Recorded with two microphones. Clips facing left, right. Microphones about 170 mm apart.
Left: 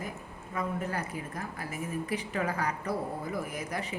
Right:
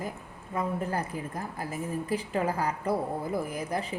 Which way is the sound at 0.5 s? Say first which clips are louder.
Right 3 dB; 30° right (ahead or behind).